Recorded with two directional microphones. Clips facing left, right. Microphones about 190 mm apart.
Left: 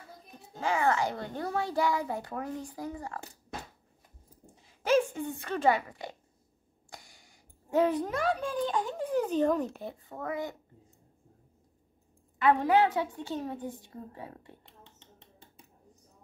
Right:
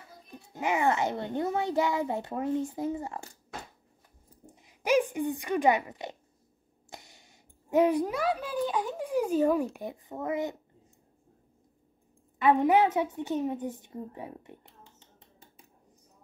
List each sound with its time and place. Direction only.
0.6 s a child's voice: 20° right (ahead or behind)
4.6 s a woman's voice: 15° right (ahead or behind)
12.4 s a child's voice: 20° right (ahead or behind)